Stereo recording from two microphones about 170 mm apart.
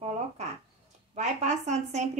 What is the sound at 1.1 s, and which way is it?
Speech, 45° right (ahead or behind).